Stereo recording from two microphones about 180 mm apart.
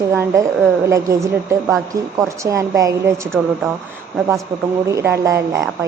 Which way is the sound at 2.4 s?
15° right (ahead or behind).